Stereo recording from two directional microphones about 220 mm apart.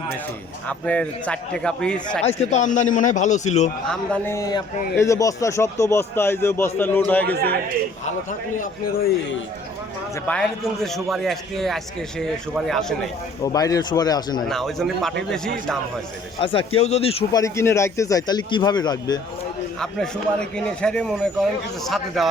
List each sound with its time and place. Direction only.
0.7 s speech: 5° left (ahead or behind)
2.2 s a man's voice: 30° left (ahead or behind)
3.8 s a man's voice: 10° left (ahead or behind)
10.2 s speech: 5° left (ahead or behind)
13.4 s a man's voice: 15° left (ahead or behind)
14.4 s speech: centre (ahead or behind)
16.4 s speech: 25° left (ahead or behind)
17.4 s a man's voice: 10° left (ahead or behind)
19.8 s speech: 5° left (ahead or behind)